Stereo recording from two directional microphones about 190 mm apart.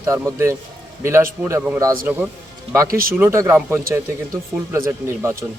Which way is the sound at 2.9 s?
50° right (ahead or behind).